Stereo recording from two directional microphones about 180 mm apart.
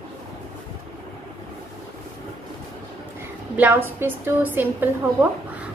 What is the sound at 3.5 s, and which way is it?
A woman's voice, 10° right (ahead or behind).